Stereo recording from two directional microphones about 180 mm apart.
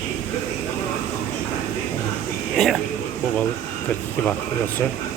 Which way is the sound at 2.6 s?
Centre (ahead or behind).